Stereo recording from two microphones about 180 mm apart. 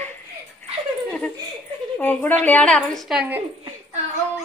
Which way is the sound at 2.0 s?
10° left (ahead or behind).